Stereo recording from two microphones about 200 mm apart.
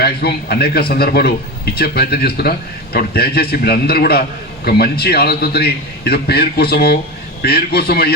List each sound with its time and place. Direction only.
0.0 s a man's voice: 55° left (ahead or behind)